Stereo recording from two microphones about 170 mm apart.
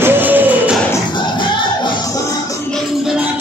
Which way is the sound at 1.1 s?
25° left (ahead or behind).